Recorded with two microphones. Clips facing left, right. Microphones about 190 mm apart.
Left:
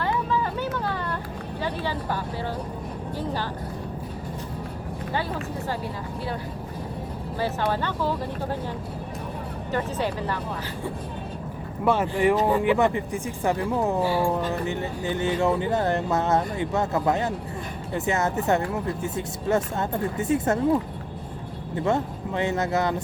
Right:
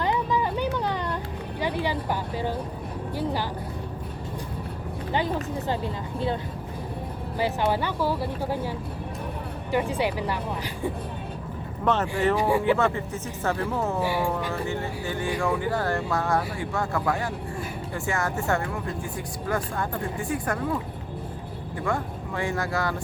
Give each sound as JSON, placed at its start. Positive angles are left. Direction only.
{"t": 0.0, "sound": "vehicle", "side_deg": -15}
{"t": 1.6, "sound": "speech", "side_deg": -15}
{"t": 5.1, "sound": "speech", "side_deg": -20}
{"t": 7.3, "sound": "speech", "side_deg": -15}
{"t": 9.7, "sound": "speech", "side_deg": -10}
{"t": 11.9, "sound": "speech", "side_deg": 10}
{"t": 12.4, "sound": "speech", "side_deg": -10}
{"t": 12.6, "sound": "speech", "side_deg": 15}
{"t": 14.0, "sound": "speech", "side_deg": -15}
{"t": 14.5, "sound": "speech", "side_deg": 20}
{"t": 21.8, "sound": "speech", "side_deg": 25}